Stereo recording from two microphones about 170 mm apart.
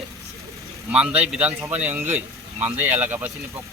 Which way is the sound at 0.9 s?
5° right (ahead or behind).